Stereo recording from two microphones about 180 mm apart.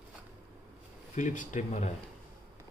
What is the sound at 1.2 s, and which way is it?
Speech, 45° left (ahead or behind).